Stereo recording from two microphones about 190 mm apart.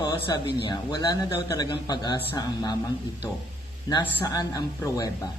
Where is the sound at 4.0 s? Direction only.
15° left (ahead or behind).